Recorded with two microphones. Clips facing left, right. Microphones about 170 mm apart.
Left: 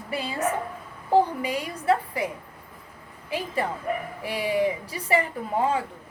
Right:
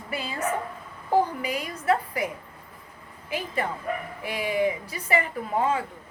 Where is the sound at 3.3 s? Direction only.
30° left (ahead or behind).